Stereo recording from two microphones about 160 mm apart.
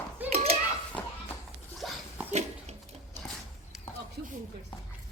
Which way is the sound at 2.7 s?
45° right (ahead or behind).